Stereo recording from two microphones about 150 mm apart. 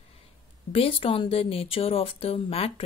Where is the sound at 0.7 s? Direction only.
35° left (ahead or behind).